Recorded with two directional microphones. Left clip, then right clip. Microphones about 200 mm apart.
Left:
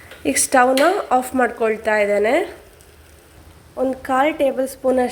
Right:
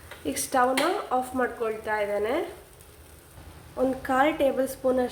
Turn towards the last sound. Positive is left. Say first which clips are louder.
# left 7 dB
turn(degrees=25)  # may be behind; listen again after turning